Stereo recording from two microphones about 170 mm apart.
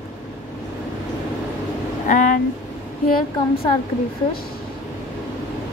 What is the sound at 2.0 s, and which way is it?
Speech, 50° left (ahead or behind).